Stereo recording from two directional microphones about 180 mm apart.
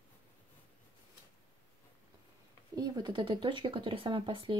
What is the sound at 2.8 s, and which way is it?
Speech, 25° right (ahead or behind).